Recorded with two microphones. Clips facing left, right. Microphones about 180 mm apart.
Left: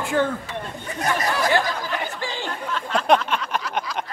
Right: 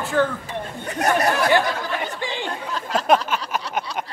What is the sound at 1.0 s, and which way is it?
Speech, 60° right (ahead or behind).